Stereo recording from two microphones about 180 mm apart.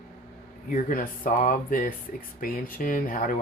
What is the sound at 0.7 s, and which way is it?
Speech, 50° left (ahead or behind).